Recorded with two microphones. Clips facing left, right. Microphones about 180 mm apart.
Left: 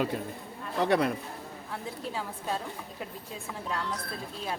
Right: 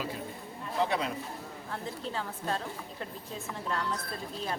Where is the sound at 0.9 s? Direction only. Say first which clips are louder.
Left 7 dB; 60° left (ahead or behind).